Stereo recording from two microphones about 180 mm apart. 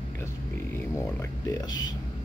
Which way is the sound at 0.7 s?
15° left (ahead or behind).